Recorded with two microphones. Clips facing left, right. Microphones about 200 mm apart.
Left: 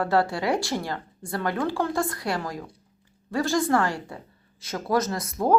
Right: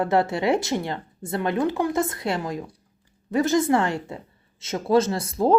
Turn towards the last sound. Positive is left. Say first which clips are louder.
# right 3 dB
turn(degrees=-30)  # may be behind; listen again after turning